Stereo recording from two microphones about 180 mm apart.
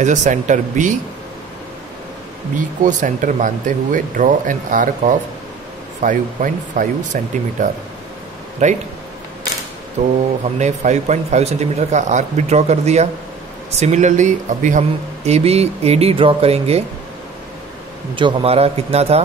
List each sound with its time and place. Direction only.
0.0 s speech: 40° right (ahead or behind)
2.5 s speech: 45° right (ahead or behind)
8.6 s a man's voice: 40° right (ahead or behind)
10.0 s a man's voice: 40° right (ahead or behind)
18.1 s a man's voice: 30° right (ahead or behind)